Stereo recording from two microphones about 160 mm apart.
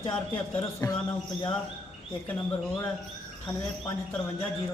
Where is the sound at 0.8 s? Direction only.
20° left (ahead or behind).